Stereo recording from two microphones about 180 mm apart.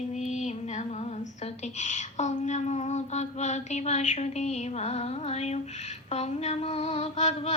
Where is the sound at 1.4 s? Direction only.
40° left (ahead or behind).